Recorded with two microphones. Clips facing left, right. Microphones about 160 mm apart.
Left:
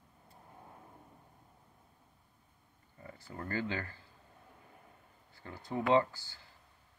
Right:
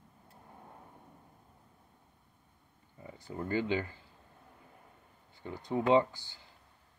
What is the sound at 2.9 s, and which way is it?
Speech, 15° right (ahead or behind).